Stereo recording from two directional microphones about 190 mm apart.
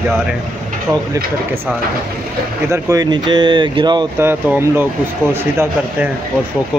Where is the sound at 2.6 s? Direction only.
15° right (ahead or behind).